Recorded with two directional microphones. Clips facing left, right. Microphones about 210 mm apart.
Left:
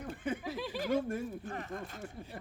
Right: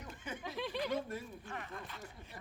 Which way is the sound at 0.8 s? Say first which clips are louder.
Left 7 dB; 50° left (ahead or behind).